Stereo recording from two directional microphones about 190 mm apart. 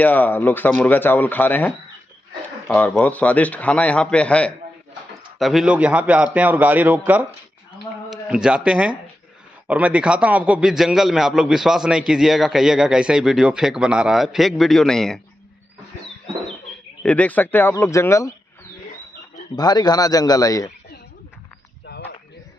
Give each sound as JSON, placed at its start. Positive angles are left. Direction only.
{"t": 0.0, "sound": "a man's voice", "side_deg": 10}
{"t": 2.7, "sound": "a man's voice", "side_deg": 5}
{"t": 8.1, "sound": "a man's voice", "side_deg": -5}
{"t": 17.0, "sound": "a man's voice", "side_deg": 5}
{"t": 19.5, "sound": "a man's voice", "side_deg": 20}